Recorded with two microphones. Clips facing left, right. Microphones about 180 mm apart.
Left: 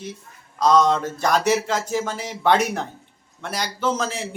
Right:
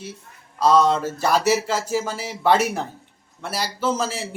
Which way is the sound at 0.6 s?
5° right (ahead or behind).